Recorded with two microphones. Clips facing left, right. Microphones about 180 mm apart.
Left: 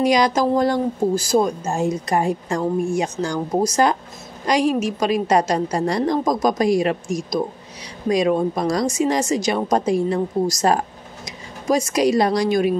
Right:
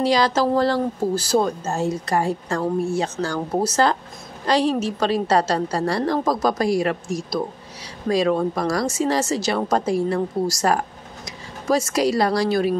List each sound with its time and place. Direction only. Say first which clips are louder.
0.0 s speech: left 2 dB; 15° left (ahead or behind)